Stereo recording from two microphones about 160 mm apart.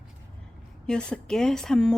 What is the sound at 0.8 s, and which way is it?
Speech, 5° left (ahead or behind).